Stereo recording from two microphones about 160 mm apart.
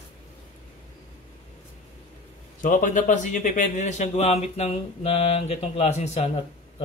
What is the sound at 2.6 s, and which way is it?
A man's voice, 55° left (ahead or behind).